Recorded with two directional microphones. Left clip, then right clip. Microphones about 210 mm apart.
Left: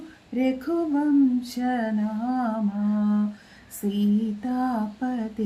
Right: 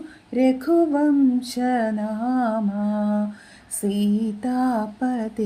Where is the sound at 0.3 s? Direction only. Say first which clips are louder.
Right 7 dB; 40° right (ahead or behind).